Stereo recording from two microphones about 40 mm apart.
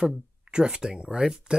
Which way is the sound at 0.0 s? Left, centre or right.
Centre.